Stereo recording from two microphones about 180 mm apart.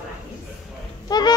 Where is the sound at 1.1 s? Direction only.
20° left (ahead or behind).